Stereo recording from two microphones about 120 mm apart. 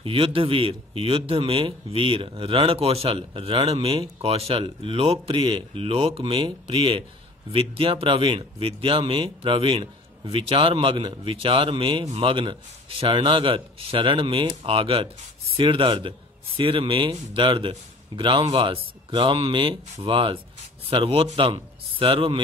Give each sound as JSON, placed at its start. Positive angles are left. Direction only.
{"t": 0.0, "sound": "a man's voice", "side_deg": -50}